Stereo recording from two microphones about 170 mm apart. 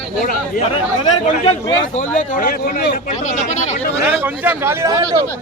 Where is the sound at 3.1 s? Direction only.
45° left (ahead or behind).